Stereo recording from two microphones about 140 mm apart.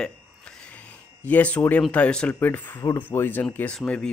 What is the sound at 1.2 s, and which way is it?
Speech, 10° left (ahead or behind).